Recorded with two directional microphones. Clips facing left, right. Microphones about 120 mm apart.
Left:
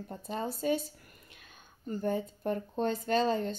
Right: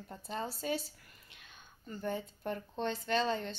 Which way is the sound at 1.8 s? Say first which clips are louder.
Left 6 dB; 40° left (ahead or behind).